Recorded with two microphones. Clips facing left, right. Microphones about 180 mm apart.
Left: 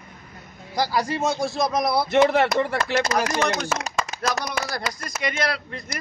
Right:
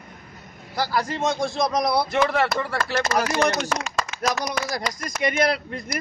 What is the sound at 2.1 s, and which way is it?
Speech, 25° left (ahead or behind).